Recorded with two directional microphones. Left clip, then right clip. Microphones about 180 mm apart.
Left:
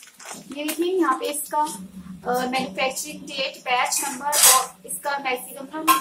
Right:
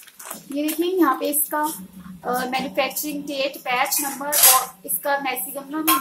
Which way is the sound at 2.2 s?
30° right (ahead or behind).